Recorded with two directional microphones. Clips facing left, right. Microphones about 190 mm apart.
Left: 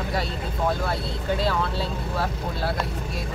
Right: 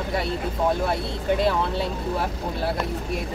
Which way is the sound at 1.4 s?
20° right (ahead or behind).